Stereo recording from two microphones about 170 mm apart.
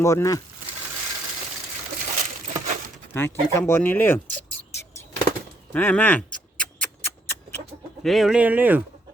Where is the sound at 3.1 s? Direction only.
15° left (ahead or behind).